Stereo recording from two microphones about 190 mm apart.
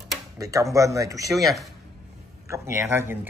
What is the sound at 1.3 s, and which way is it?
Speech, centre (ahead or behind).